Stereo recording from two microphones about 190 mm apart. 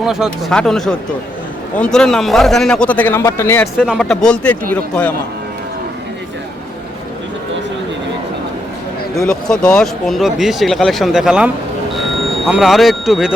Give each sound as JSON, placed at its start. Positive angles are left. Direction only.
{"t": 0.0, "sound": "a man's voice", "side_deg": 0}
{"t": 9.1, "sound": "speech", "side_deg": 5}